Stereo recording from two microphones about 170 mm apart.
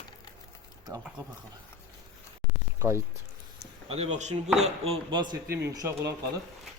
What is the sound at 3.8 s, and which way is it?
Speech, 40° right (ahead or behind).